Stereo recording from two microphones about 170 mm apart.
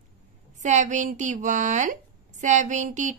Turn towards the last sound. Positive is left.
turn(degrees=-45)  # may be behind; listen again after turning